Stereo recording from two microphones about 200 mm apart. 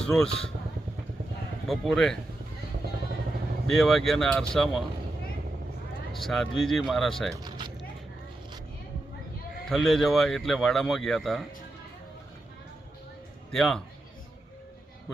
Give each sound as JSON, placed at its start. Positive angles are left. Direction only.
{"t": 0.0, "sound": "speech", "side_deg": 5}
{"t": 1.6, "sound": "speech", "side_deg": 0}
{"t": 3.7, "sound": "speech", "side_deg": 0}
{"t": 6.1, "sound": "speech", "side_deg": 0}
{"t": 7.4, "sound": "a sound", "side_deg": -20}
{"t": 9.6, "sound": "speech", "side_deg": 0}
{"t": 13.5, "sound": "speech", "side_deg": 0}